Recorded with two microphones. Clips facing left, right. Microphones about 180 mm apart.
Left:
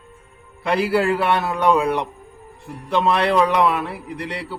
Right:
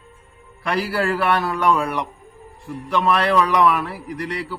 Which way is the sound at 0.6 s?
20° left (ahead or behind).